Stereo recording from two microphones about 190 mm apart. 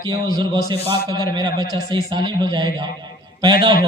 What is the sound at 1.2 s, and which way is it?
A man's voice, 20° right (ahead or behind).